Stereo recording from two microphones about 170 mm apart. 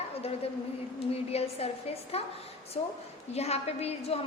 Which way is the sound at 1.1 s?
35° left (ahead or behind).